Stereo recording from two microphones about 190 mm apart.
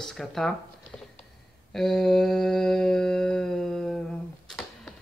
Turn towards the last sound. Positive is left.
turn(degrees=5)  # may be behind; listen again after turning